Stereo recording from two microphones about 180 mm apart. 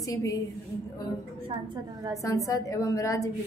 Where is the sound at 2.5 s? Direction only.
20° left (ahead or behind).